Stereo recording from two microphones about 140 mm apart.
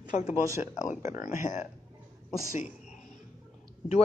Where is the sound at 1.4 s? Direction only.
60° left (ahead or behind).